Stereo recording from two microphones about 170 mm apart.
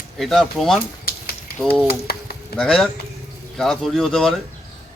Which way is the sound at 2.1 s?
65° left (ahead or behind).